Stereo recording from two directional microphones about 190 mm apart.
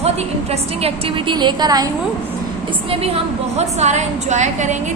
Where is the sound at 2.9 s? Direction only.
30° right (ahead or behind).